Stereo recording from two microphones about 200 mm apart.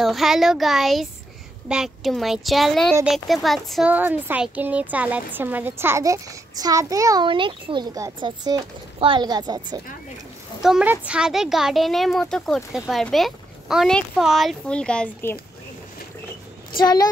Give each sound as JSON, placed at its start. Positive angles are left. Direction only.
{"t": 0.0, "sound": "speech", "side_deg": 0}
{"t": 10.6, "sound": "speech", "side_deg": -5}
{"t": 16.7, "sound": "speech", "side_deg": 20}